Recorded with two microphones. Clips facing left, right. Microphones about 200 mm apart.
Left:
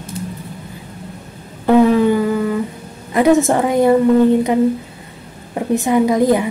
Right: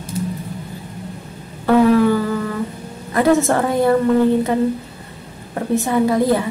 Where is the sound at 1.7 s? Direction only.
20° left (ahead or behind).